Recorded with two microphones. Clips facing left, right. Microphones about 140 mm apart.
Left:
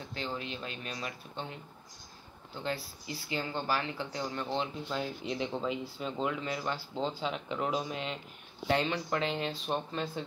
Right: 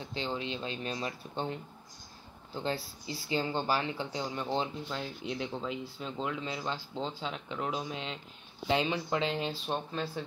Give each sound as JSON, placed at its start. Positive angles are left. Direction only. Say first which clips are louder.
{"t": 0.1, "sound": "speech", "louder": "right 3 dB", "side_deg": -25}
{"t": 4.8, "sound": "speech", "louder": "left 2 dB", "side_deg": 0}
{"t": 6.4, "sound": "speech", "louder": "left 1 dB", "side_deg": -20}
{"t": 7.0, "sound": "speech", "louder": "left 3 dB", "side_deg": 5}
{"t": 8.6, "sound": "speech", "louder": "even", "side_deg": -20}
{"t": 9.2, "sound": "speech", "louder": "right 1 dB", "side_deg": 0}